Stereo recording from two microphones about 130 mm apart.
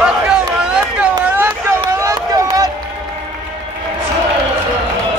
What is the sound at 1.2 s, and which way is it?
Run, 15° right (ahead or behind).